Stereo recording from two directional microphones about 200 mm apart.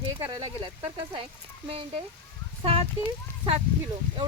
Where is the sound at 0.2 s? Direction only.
20° right (ahead or behind).